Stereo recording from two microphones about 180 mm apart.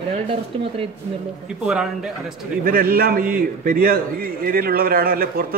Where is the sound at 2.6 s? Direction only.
55° right (ahead or behind).